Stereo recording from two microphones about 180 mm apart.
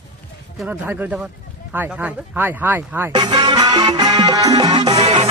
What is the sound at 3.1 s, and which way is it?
Music, 25° right (ahead or behind).